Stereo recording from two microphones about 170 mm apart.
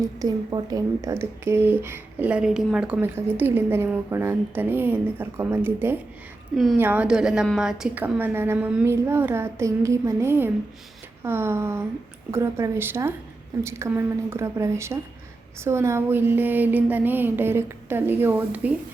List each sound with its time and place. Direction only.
0.2 s speech: 20° right (ahead or behind)